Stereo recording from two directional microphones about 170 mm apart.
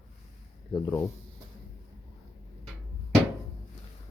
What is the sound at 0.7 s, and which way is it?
Speech, 20° left (ahead or behind).